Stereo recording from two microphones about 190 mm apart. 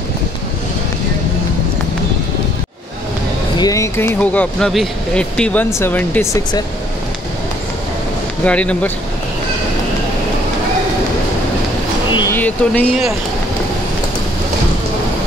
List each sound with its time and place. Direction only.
3.5 s speech: 20° left (ahead or behind)
8.5 s speech: 5° left (ahead or behind)
12.1 s a sound: 25° left (ahead or behind)
12.4 s speech: 10° left (ahead or behind)